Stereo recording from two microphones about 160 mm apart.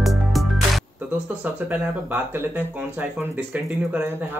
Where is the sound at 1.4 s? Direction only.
10° right (ahead or behind).